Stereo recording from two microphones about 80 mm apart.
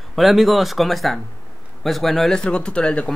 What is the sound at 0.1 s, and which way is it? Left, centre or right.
Speech, centre.